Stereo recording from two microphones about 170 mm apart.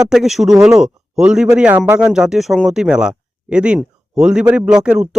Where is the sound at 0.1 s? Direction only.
Centre (ahead or behind).